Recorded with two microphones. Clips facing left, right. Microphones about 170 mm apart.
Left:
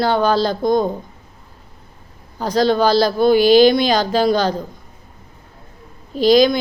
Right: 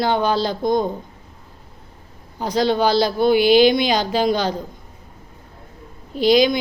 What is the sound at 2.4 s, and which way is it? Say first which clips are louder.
Speech: left 3 dB; 15° right (ahead or behind).